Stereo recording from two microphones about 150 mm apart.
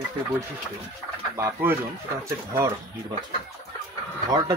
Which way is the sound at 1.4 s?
15° right (ahead or behind).